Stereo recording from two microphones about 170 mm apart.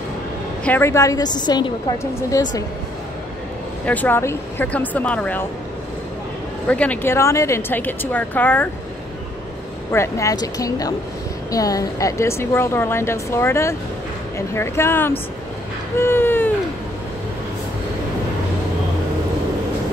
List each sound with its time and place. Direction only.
0.7 s a woman's voice: 15° left (ahead or behind)
3.8 s a woman's voice: 10° left (ahead or behind)
6.7 s a woman's voice: 10° left (ahead or behind)
9.8 s a woman's voice: 15° left (ahead or behind)